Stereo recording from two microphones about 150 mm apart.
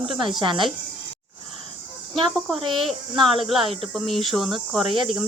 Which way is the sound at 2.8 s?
Centre (ahead or behind).